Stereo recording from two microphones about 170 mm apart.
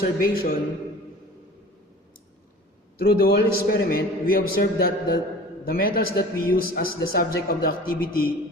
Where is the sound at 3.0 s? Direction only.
65° left (ahead or behind).